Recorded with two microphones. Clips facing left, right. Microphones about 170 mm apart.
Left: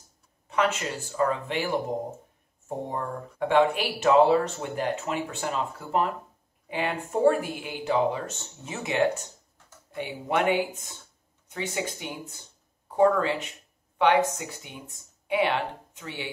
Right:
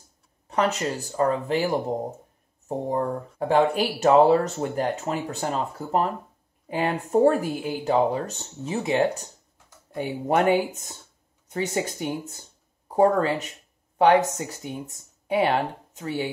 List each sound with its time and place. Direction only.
0.5 s speech: 40° right (ahead or behind)